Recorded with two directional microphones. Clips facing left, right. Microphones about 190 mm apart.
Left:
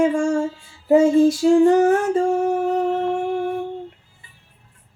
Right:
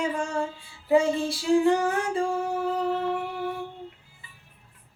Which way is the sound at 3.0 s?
45° left (ahead or behind).